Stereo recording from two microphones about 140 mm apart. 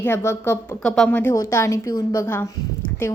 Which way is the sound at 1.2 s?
15° left (ahead or behind).